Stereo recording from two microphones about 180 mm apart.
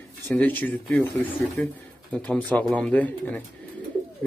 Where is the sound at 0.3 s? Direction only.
10° left (ahead or behind).